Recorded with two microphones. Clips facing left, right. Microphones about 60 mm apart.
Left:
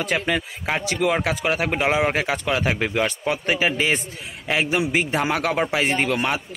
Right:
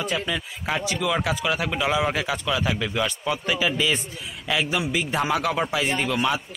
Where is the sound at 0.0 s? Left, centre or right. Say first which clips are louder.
Left 4 dB; left.